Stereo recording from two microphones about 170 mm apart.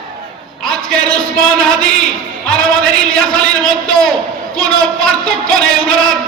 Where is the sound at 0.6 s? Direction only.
5° left (ahead or behind).